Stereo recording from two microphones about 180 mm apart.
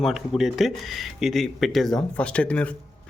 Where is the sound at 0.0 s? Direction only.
Centre (ahead or behind).